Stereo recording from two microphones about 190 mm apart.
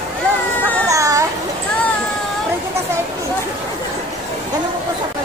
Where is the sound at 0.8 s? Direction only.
15° right (ahead or behind).